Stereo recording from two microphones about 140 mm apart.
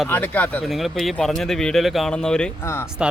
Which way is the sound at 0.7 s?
Centre (ahead or behind).